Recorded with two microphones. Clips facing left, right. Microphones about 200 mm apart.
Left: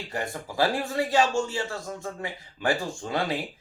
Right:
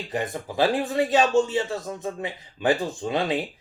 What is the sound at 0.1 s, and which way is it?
A man's voice, 20° right (ahead or behind).